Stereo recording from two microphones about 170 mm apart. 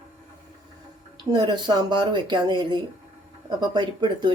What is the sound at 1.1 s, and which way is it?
Speech, 25° right (ahead or behind).